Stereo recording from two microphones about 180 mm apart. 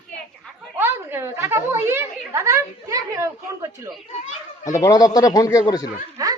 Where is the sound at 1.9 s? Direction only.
15° right (ahead or behind).